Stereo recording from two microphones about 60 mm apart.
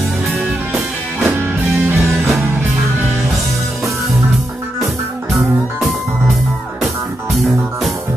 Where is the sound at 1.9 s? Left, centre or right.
Centre.